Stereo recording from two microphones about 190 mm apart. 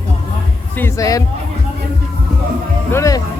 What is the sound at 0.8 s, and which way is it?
Speech, 15° left (ahead or behind).